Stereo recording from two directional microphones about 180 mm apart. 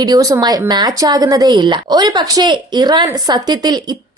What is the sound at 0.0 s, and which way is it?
A woman's voice, 20° right (ahead or behind).